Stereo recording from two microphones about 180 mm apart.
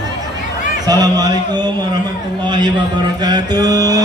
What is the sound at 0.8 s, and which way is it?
Speech, 20° right (ahead or behind).